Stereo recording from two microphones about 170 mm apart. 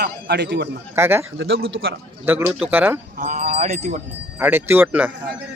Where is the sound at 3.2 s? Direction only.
45° right (ahead or behind).